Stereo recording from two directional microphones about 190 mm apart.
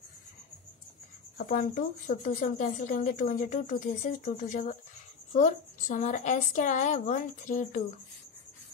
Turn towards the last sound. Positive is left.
turn(degrees=40)  # may be behind; listen again after turning